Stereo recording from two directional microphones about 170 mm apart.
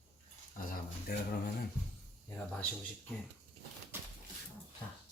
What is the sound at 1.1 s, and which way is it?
Speech, 60° left (ahead or behind).